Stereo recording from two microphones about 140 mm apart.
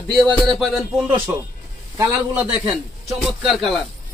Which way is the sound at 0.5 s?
Centre (ahead or behind).